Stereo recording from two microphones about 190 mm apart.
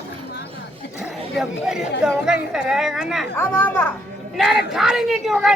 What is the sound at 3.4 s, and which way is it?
Speech, 10° left (ahead or behind).